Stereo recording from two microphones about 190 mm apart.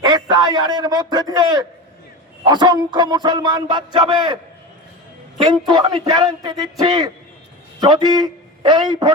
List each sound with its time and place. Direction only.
0.0 s a man's voice: 25° right (ahead or behind)
2.4 s music: 25° right (ahead or behind)
5.5 s music: 20° right (ahead or behind)
7.8 s a man's voice: 20° right (ahead or behind)